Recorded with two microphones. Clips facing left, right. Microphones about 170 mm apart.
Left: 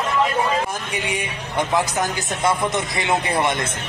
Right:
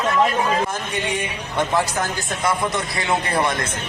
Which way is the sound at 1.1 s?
15° left (ahead or behind).